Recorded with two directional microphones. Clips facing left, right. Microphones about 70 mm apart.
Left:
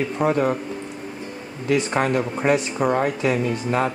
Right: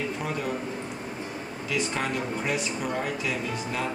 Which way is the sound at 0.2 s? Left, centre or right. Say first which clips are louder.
Left 11 dB; left.